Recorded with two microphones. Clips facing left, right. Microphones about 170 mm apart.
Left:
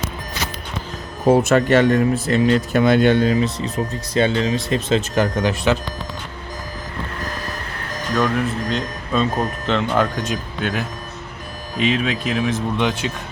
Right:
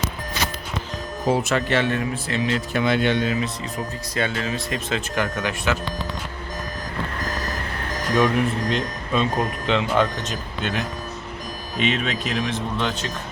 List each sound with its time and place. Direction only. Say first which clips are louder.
1.3 s speech: left 7 dB; 45° left (ahead or behind)
4.1 s speech: left 8 dB; 25° left (ahead or behind)
4.9 s speech: left 5 dB; 35° left (ahead or behind)
8.1 s speech: even; centre (ahead or behind)